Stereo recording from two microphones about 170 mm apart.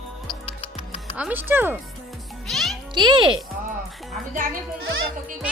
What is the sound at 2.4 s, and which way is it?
Music, centre (ahead or behind).